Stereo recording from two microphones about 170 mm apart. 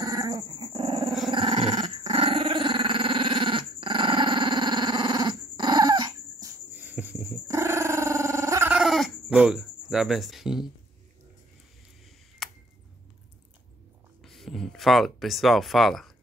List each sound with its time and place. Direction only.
0.0 s dog: 20° right (ahead or behind)
6.7 s dog: 10° right (ahead or behind)
8.7 s goat: centre (ahead or behind)
9.3 s cricket: 5° right (ahead or behind)
12.4 s a sound: centre (ahead or behind)
14.2 s speech: centre (ahead or behind)